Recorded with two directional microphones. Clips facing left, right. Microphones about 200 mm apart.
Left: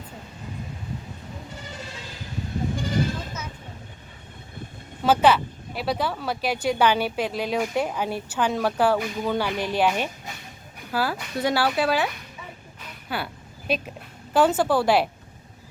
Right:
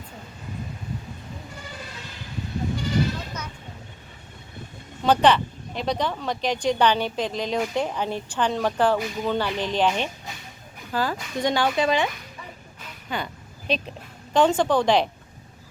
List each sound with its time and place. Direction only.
2.7 s sheep: 50° left (ahead or behind)
5.0 s speech: 5° left (ahead or behind)
13.1 s a sound: 5° left (ahead or behind)
14.3 s speech: 5° left (ahead or behind)